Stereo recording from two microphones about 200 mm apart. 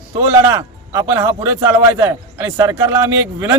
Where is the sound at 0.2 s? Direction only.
15° right (ahead or behind).